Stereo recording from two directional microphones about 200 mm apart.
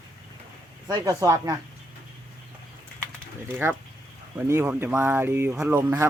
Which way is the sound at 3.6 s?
10° right (ahead or behind).